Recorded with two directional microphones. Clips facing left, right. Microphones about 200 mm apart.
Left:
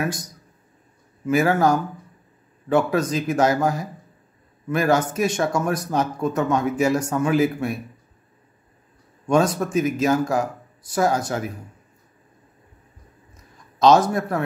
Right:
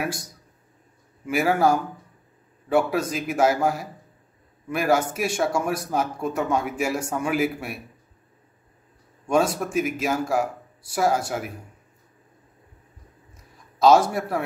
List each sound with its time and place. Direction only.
1.2 s speech: 10° right (ahead or behind)
9.3 s speech: 10° right (ahead or behind)
13.7 s speech: 10° right (ahead or behind)